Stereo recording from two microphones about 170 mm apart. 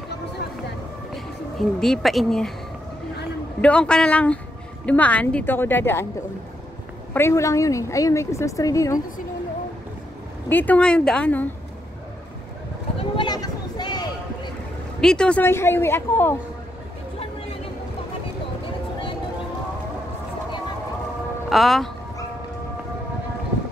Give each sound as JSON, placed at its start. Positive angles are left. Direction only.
{"t": 1.1, "sound": "speech", "side_deg": 0}
{"t": 3.6, "sound": "a woman's voice", "side_deg": 5}
{"t": 7.2, "sound": "a woman's voice", "side_deg": 15}
{"t": 10.5, "sound": "a woman's voice", "side_deg": 10}
{"t": 13.1, "sound": "a sound", "side_deg": 25}
{"t": 15.0, "sound": "a woman's voice", "side_deg": 5}
{"t": 21.5, "sound": "speech", "side_deg": 0}